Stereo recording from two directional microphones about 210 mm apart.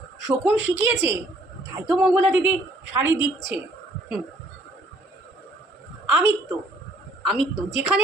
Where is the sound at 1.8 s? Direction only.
Centre (ahead or behind).